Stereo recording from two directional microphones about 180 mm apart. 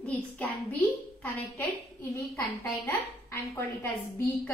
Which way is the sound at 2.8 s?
10° left (ahead or behind).